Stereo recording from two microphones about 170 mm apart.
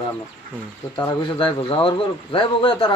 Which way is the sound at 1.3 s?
30° left (ahead or behind).